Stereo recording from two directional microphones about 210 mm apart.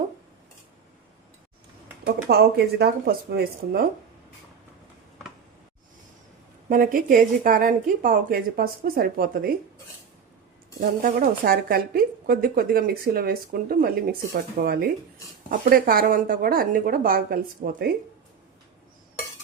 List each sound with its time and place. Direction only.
2.0 s speech: 45° right (ahead or behind)
6.7 s speech: 40° right (ahead or behind)
10.8 s speech: 40° right (ahead or behind)